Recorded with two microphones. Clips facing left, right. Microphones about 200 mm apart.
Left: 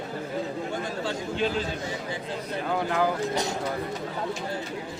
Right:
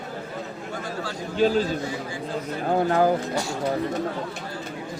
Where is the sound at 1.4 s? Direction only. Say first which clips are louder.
Right 8 dB; 40° right (ahead or behind).